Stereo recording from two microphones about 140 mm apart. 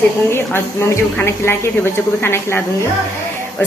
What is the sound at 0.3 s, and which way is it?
A woman's voice, 20° left (ahead or behind).